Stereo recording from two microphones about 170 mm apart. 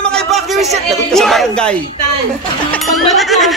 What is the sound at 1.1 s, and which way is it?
Speech, centre (ahead or behind).